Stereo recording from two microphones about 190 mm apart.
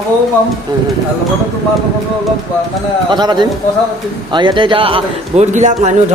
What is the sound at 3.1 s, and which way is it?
A man's voice, 20° right (ahead or behind).